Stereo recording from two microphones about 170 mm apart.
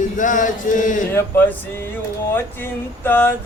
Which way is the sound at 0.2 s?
50° left (ahead or behind).